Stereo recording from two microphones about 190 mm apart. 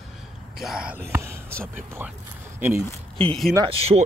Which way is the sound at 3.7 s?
30° right (ahead or behind).